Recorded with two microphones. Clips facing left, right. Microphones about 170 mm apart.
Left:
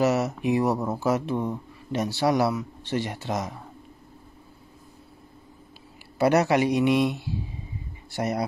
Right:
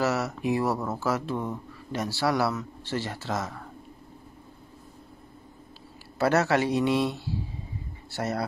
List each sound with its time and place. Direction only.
0.0 s speech: 20° left (ahead or behind)
6.1 s a man's voice: 15° left (ahead or behind)